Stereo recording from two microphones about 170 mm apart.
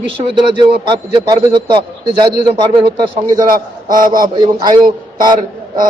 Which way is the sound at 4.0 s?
55° right (ahead or behind).